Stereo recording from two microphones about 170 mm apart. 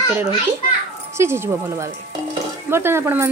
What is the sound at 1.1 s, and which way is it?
Speech, 15° right (ahead or behind).